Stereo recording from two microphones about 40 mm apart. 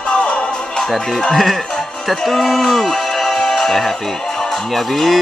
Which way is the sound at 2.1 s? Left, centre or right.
Centre.